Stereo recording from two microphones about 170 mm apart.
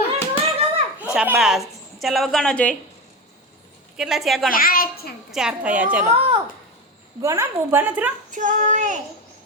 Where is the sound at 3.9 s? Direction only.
Centre (ahead or behind).